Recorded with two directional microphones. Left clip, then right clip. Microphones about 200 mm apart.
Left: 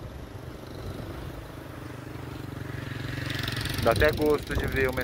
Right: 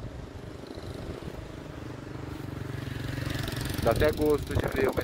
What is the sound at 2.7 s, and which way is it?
Vehicle, 20° right (ahead or behind).